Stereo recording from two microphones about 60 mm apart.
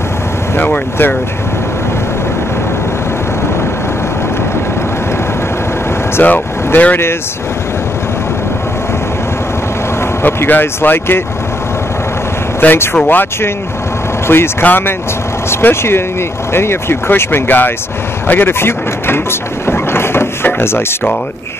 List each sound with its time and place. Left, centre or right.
0.6 s speech: left
6.2 s speech: left
10.2 s speech: left
12.5 s speech: left
15.5 s speech: left
18.2 s a sound: left